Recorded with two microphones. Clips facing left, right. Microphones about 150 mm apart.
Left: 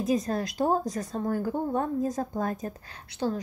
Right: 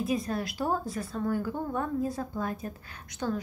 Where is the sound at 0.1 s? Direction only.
35° left (ahead or behind).